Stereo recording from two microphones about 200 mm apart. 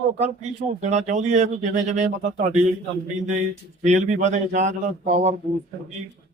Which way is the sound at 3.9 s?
35° right (ahead or behind).